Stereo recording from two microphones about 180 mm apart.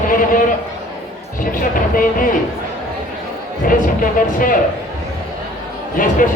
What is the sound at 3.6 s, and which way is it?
Speech, 50° left (ahead or behind).